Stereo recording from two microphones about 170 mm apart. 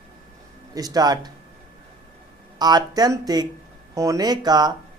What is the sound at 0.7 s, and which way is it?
Speech, 20° right (ahead or behind).